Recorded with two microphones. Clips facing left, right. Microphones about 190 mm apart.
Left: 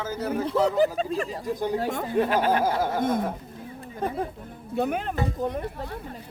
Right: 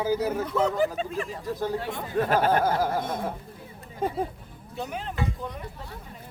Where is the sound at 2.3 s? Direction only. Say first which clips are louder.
Right 4 dB; 45° right (ahead or behind).